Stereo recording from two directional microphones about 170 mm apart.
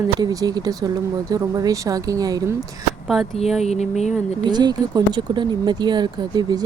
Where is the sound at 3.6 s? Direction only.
40° left (ahead or behind).